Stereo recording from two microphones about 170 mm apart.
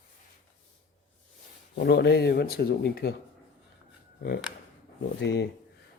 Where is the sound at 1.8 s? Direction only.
80° left; by 3.1 s 65° left (ahead or behind).